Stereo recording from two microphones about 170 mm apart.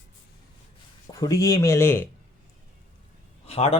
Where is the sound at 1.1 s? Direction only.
20° left (ahead or behind).